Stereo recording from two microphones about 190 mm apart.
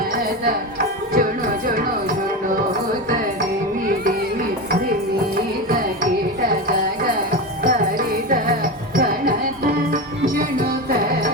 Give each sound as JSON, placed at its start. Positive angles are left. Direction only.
{"t": 1.1, "sound": "music", "side_deg": -50}
{"t": 7.6, "sound": "music", "side_deg": -45}